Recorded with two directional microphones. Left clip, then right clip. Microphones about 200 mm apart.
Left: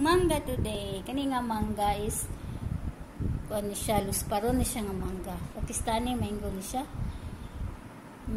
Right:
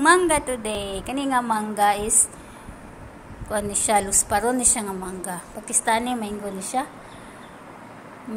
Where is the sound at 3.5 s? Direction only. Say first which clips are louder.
Right 9 dB; 10° left (ahead or behind).